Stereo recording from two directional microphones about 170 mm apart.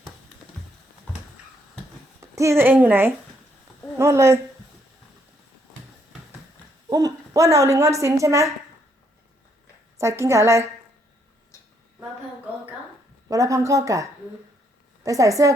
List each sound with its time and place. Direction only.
2.2 s speech: 15° right (ahead or behind)
6.9 s a woman's voice: 20° right (ahead or behind)
10.0 s a woman's voice: 15° right (ahead or behind)
11.5 s a sound: 15° left (ahead or behind)
13.2 s speech: 20° right (ahead or behind)